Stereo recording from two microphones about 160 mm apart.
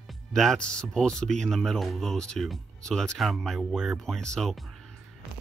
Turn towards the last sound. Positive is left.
turn(degrees=0)  # may be behind; listen again after turning